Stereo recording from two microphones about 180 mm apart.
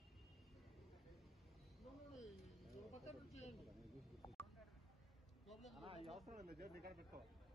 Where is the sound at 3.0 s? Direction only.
35° left (ahead or behind).